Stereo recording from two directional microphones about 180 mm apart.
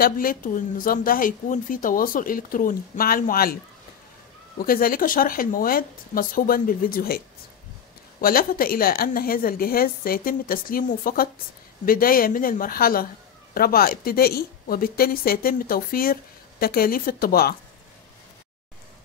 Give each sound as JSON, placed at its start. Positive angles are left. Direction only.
{"t": 0.0, "sound": "a woman's voice", "side_deg": 50}
{"t": 4.6, "sound": "a woman's voice", "side_deg": 55}